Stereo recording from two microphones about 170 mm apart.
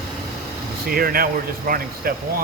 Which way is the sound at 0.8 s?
60° right (ahead or behind).